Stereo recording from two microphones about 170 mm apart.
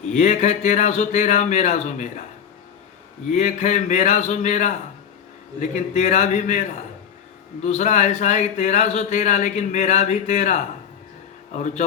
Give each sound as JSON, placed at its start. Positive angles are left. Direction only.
{"t": 0.1, "sound": "a man's voice", "side_deg": 45}
{"t": 3.2, "sound": "a man's voice", "side_deg": 45}